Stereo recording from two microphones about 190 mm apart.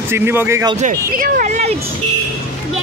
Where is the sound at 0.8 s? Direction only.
45° right (ahead or behind).